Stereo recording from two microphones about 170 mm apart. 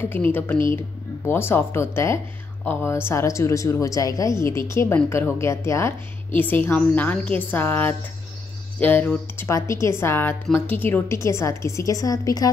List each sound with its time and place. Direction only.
0.1 s speech: 10° left (ahead or behind)